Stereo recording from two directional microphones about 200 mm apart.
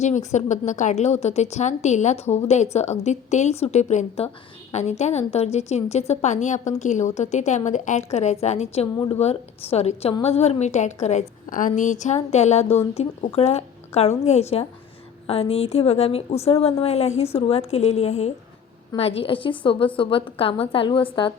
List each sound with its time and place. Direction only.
0.0 s a woman's voice: 35° left (ahead or behind)